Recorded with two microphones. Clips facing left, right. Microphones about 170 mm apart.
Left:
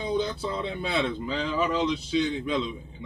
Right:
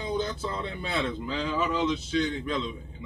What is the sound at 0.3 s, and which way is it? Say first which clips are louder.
Speech: left 2 dB; centre (ahead or behind).